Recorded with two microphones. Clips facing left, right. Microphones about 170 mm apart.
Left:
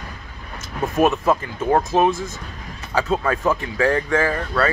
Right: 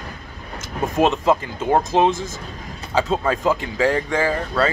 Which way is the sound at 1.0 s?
20° right (ahead or behind).